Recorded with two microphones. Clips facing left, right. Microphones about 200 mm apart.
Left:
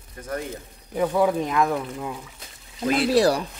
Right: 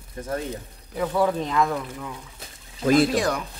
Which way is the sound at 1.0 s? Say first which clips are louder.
Left 2 dB; 15° left (ahead or behind).